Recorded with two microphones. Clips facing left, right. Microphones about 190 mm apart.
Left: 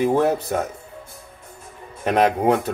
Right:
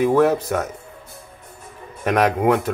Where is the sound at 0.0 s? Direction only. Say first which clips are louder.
Right 2 dB; 30° left (ahead or behind).